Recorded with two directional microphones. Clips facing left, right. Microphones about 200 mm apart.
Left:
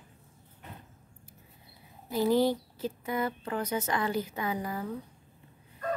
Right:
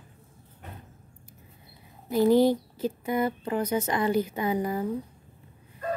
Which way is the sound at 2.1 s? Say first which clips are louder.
Right 5 dB; 15° right (ahead or behind).